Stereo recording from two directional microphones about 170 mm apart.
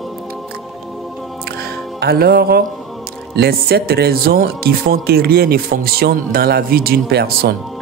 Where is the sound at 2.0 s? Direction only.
65° right (ahead or behind).